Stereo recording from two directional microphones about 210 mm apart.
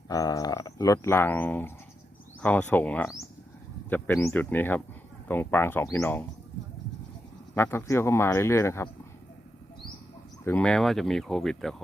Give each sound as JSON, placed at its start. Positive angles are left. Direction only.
{"t": 0.1, "sound": "speech", "side_deg": 15}
{"t": 7.5, "sound": "speech", "side_deg": 10}
{"t": 10.4, "sound": "speech", "side_deg": 5}